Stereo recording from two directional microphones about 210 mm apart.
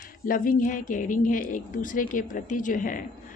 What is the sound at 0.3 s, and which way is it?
A woman's voice, 40° left (ahead or behind).